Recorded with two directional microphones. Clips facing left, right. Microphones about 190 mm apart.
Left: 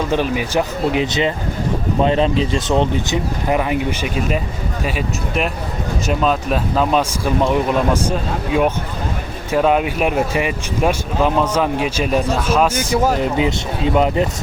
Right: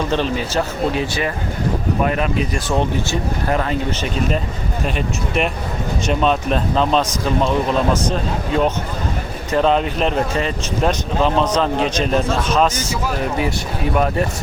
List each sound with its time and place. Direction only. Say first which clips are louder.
0.1 s speech: left 2 dB; 15° left (ahead or behind)
9.5 s speech: left 1 dB; 10° left (ahead or behind)
13.1 s speech: left 3 dB; 20° left (ahead or behind)